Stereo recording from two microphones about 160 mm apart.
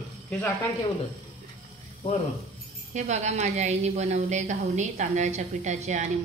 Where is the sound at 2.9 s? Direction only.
45° right (ahead or behind).